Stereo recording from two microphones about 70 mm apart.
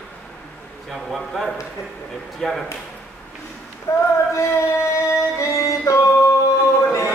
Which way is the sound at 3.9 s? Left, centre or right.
Left.